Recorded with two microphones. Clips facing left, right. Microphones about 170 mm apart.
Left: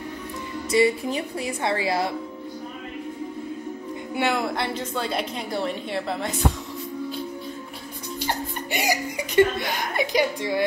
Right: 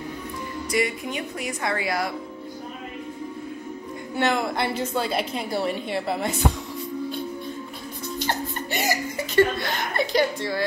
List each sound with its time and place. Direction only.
0.7 s speech: 30° left (ahead or behind)
4.1 s a woman's voice: 10° left (ahead or behind)
8.7 s speech: 15° left (ahead or behind)